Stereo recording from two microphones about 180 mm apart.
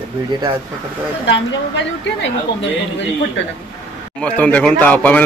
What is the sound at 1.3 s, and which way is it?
A woman's voice, 90° left.